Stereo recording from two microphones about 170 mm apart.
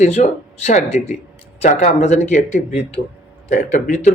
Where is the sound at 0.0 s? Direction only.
40° left (ahead or behind).